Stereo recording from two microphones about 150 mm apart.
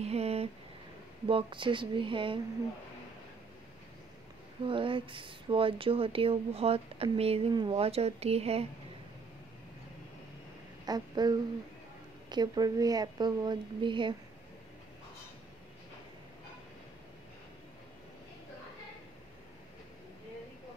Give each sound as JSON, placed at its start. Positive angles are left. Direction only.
{"t": 0.0, "sound": "a sound", "side_deg": -45}
{"t": 1.2, "sound": "speech", "side_deg": -35}
{"t": 4.6, "sound": "speech", "side_deg": -35}
{"t": 10.9, "sound": "a woman's voice", "side_deg": -25}